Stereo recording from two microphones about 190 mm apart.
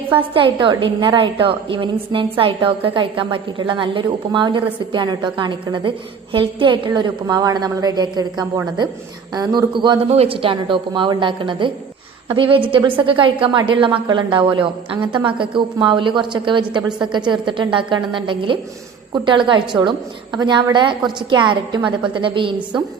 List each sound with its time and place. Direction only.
0.3 s a woman's voice: 25° right (ahead or behind)